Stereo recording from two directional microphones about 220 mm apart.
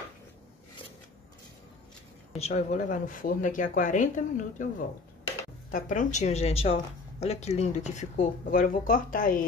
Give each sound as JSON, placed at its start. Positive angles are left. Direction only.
{"t": 2.3, "sound": "speech", "side_deg": 30}